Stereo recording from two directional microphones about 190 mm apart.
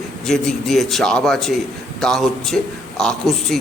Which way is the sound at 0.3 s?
Centre (ahead or behind).